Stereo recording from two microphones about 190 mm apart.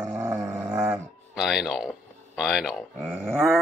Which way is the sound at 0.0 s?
15° right (ahead or behind).